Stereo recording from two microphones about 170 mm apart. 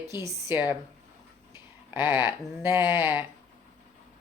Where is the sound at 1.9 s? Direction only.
10° right (ahead or behind).